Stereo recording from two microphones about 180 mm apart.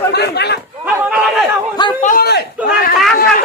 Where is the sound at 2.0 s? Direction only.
55° left (ahead or behind).